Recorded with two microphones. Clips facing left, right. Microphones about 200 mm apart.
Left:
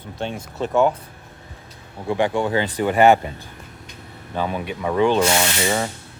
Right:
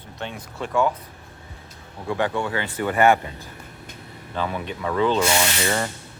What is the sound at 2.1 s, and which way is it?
Speech, 15° left (ahead or behind).